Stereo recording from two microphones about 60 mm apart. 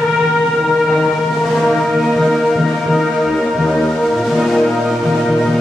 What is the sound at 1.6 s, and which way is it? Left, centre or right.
Music, centre.